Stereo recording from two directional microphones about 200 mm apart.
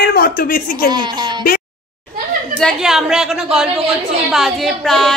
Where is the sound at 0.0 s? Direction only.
50° left (ahead or behind).